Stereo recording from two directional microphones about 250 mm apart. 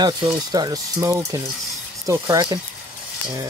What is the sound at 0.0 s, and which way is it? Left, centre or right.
Speech, centre.